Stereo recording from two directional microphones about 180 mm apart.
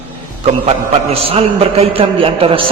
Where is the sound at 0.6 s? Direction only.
30° right (ahead or behind).